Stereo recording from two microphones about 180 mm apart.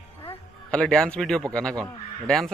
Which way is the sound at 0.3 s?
5° left (ahead or behind).